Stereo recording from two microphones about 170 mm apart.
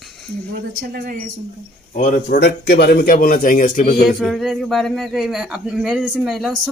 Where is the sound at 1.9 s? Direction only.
55° left (ahead or behind).